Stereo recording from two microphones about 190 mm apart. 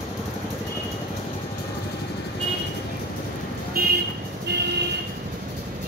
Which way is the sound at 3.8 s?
50° right (ahead or behind).